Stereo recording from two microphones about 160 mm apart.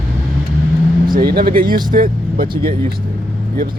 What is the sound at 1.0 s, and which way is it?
Speech, 70° right (ahead or behind).